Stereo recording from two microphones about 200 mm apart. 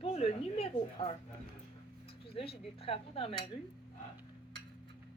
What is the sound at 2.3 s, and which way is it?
A woman's voice, 30° left (ahead or behind).